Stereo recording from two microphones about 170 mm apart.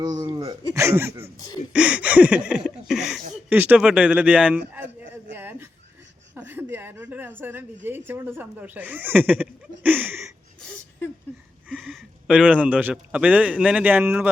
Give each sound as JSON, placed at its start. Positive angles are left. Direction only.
{"t": 0.0, "sound": "speech", "side_deg": -25}
{"t": 5.3, "sound": "a sound", "side_deg": -10}
{"t": 7.9, "sound": "speech", "side_deg": -15}
{"t": 11.7, "sound": "a man's voice", "side_deg": 0}